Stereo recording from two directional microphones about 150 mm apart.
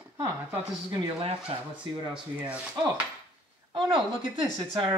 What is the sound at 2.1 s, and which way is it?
Speech, 10° right (ahead or behind).